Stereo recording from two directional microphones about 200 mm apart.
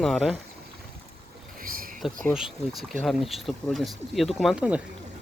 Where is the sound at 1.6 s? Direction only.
45° right (ahead or behind).